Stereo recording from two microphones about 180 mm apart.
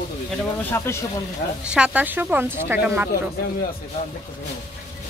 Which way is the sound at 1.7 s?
5° right (ahead or behind).